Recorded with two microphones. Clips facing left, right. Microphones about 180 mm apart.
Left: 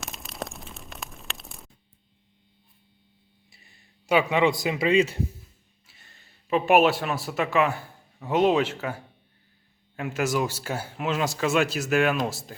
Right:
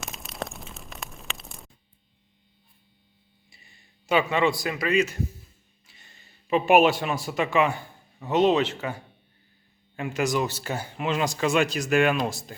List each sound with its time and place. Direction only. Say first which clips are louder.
0.0 s a sound: right 1 dB; centre (ahead or behind)
3.5 s a man's voice: right 1 dB; centre (ahead or behind); by 5.2 s 30° left (ahead or behind)
5.8 s speech: right 1 dB; 5° left (ahead or behind)